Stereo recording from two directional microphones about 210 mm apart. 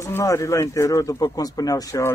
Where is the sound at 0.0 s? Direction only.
15° left (ahead or behind).